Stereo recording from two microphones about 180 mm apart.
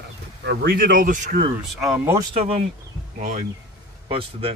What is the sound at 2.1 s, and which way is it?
Speech, 30° right (ahead or behind).